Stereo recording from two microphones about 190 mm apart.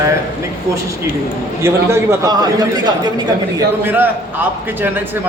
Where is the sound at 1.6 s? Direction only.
15° right (ahead or behind).